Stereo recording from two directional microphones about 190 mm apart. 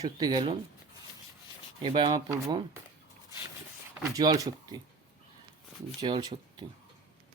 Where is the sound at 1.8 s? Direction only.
25° right (ahead or behind).